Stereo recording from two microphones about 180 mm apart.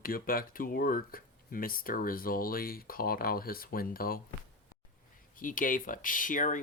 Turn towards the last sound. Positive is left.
turn(degrees=45)  # may be behind; listen again after turning